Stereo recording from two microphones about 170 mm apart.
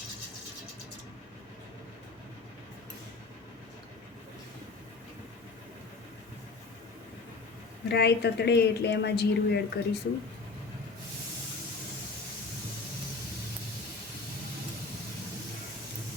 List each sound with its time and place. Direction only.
7.9 s a woman's voice: 75° left (ahead or behind)